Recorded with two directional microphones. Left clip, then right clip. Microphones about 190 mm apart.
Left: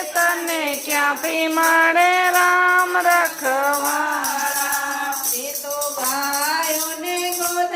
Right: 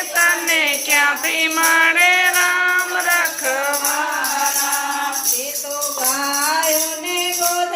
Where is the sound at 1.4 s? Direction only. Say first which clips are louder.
Right 1 dB; 30° left (ahead or behind).